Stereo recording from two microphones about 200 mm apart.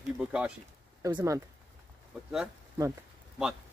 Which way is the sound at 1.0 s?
15° right (ahead or behind).